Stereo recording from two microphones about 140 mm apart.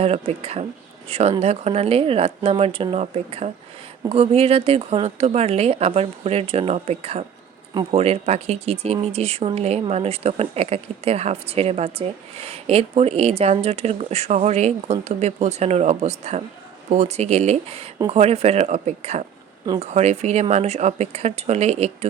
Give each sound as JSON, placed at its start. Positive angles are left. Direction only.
{"t": 0.0, "sound": "speech", "side_deg": -45}
{"t": 7.7, "sound": "a man's voice", "side_deg": -30}
{"t": 7.9, "sound": "speech", "side_deg": -50}